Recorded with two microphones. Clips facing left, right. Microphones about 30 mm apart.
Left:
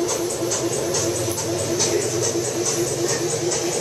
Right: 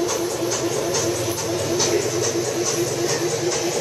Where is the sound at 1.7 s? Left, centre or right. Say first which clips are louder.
Right 2 dB; centre.